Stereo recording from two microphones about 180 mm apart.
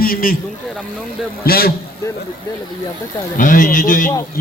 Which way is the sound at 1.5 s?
55° left (ahead or behind).